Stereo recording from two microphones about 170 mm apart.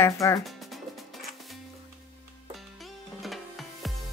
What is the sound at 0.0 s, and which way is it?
Speech, 15° left (ahead or behind).